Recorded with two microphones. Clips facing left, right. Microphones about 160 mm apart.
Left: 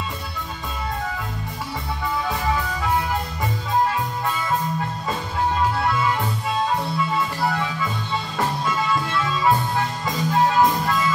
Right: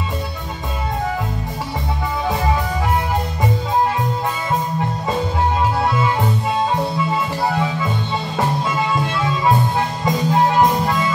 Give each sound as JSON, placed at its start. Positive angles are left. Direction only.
{"t": 5.8, "sound": "music", "side_deg": -25}